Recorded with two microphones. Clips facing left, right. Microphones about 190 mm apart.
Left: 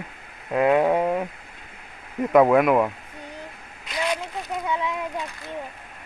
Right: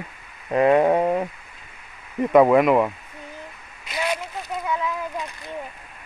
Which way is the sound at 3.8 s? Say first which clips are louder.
Even; 5° right (ahead or behind).